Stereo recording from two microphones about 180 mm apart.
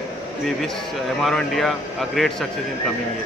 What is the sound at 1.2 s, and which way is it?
Speech, centre (ahead or behind).